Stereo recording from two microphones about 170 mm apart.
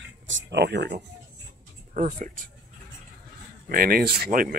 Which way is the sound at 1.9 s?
45° right (ahead or behind).